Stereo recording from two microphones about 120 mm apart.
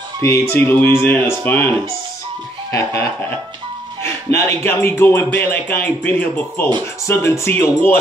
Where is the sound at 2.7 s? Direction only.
25° left (ahead or behind).